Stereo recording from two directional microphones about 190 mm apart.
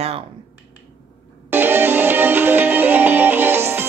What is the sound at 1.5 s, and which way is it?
Music, 10° right (ahead or behind).